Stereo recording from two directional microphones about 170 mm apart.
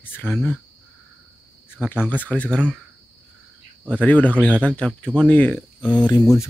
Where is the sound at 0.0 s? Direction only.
10° left (ahead or behind).